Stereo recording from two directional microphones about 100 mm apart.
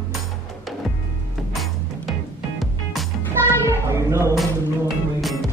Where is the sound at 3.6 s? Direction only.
25° right (ahead or behind).